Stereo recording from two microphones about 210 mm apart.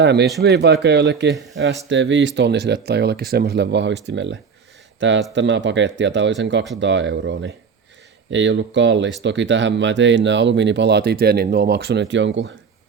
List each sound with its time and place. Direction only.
0.0 s speech: 55° right (ahead or behind)
1.3 s speech: centre (ahead or behind)
1.9 s speech: 60° right (ahead or behind)